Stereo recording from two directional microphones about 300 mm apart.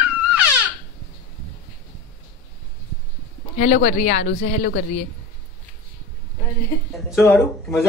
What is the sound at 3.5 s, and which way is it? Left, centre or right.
Speech, left.